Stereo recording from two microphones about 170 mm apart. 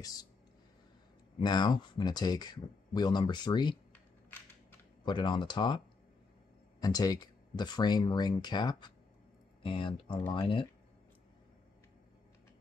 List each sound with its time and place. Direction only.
1.4 s speech: 25° left (ahead or behind)
3.9 s a sound: 10° left (ahead or behind)
5.0 s speech: 30° left (ahead or behind)
6.8 s speech: 20° left (ahead or behind)